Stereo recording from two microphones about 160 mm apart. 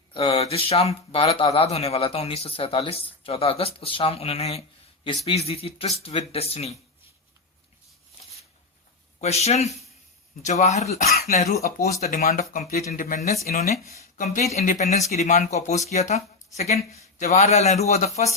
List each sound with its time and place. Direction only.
0.3 s speech: 40° left (ahead or behind)
9.2 s a man's voice: 40° left (ahead or behind)
12.1 s speech: 60° left (ahead or behind)
14.5 s a man's voice: 50° left (ahead or behind)